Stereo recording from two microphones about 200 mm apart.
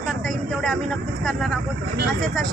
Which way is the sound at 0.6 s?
Centre (ahead or behind).